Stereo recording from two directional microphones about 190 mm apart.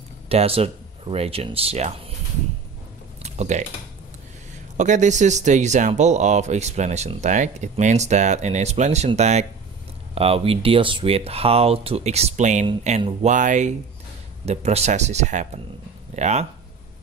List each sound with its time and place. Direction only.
0.3 s speech: 30° right (ahead or behind)
3.2 s typing: 35° right (ahead or behind)
4.7 s speech: 40° right (ahead or behind)